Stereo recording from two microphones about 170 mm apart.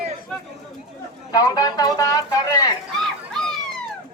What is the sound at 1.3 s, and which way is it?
Speech, 20° left (ahead or behind).